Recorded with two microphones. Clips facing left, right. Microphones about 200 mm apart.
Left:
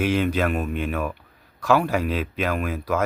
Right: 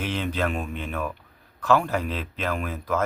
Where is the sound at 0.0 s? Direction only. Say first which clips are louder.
Left 6 dB; 10° left (ahead or behind).